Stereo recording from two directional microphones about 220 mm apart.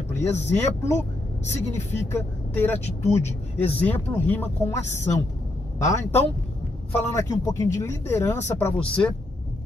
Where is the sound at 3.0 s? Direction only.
30° left (ahead or behind).